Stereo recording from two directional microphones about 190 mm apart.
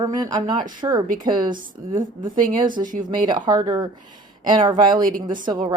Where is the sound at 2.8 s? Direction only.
45° right (ahead or behind).